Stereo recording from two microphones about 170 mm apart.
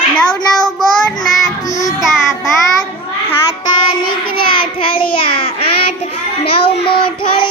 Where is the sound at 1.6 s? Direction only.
20° left (ahead or behind).